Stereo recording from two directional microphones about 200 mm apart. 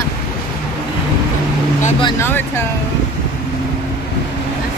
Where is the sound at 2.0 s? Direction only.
20° left (ahead or behind).